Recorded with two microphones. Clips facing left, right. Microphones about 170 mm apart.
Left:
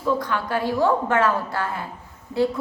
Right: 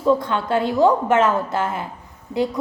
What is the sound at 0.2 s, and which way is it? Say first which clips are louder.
A woman's voice: right 4 dB; 25° right (ahead or behind).